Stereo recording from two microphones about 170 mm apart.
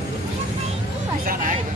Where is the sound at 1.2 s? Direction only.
55° right (ahead or behind).